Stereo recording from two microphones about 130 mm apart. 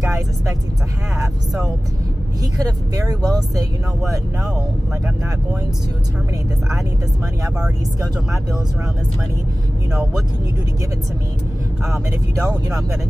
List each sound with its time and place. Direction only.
2.6 s speech: 30° right (ahead or behind)